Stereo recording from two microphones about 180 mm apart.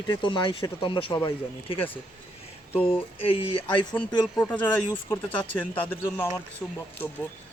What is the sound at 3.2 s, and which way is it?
Speech, 30° left (ahead or behind).